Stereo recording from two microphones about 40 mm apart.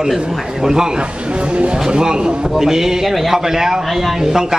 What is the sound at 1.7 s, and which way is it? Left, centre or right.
A man's voice, centre.